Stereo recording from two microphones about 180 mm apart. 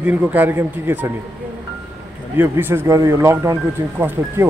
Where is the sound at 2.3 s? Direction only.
10° right (ahead or behind).